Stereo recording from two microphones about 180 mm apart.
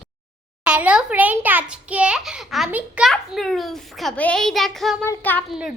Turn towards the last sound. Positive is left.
turn(degrees=-5)  # may be behind; listen again after turning